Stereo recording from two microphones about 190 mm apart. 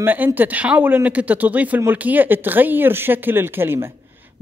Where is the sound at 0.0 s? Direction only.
10° right (ahead or behind).